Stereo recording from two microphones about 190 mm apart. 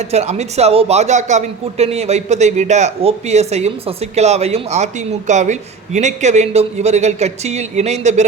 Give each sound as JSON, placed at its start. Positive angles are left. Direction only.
{"t": 0.1, "sound": "speech", "side_deg": -35}